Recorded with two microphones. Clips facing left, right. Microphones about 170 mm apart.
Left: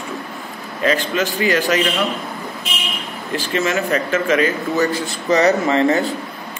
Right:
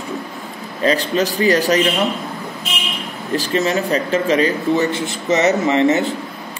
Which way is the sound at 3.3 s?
35° right (ahead or behind).